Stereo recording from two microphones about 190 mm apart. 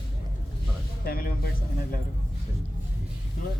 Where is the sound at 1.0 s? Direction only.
50° left (ahead or behind).